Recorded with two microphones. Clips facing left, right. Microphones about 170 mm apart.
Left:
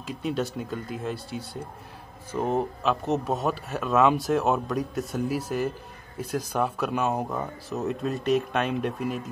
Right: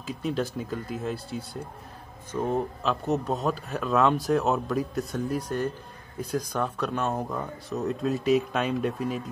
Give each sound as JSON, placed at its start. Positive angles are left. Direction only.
{"t": 0.0, "sound": "speech", "side_deg": 0}
{"t": 2.3, "sound": "speech", "side_deg": 25}
{"t": 2.8, "sound": "speech", "side_deg": 0}
{"t": 7.3, "sound": "speech", "side_deg": 0}